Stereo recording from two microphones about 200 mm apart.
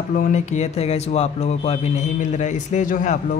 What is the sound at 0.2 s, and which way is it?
A man's voice, 35° left (ahead or behind).